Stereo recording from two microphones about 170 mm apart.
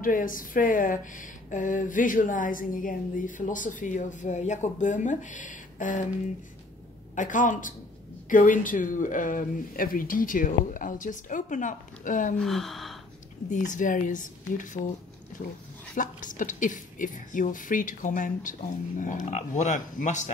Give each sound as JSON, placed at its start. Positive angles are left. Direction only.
{"t": 0.0, "sound": "speech", "side_deg": 55}
{"t": 7.2, "sound": "speech", "side_deg": 50}
{"t": 12.4, "sound": "speech", "side_deg": 0}
{"t": 13.5, "sound": "speech", "side_deg": 50}
{"t": 16.0, "sound": "speech", "side_deg": 50}